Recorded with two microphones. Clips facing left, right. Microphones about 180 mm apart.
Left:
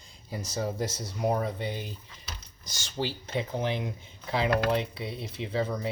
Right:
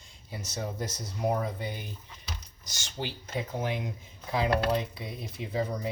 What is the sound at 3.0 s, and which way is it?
Speech, 30° left (ahead or behind).